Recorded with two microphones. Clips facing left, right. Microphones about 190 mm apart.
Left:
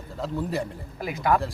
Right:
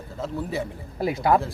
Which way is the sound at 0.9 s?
30° right (ahead or behind).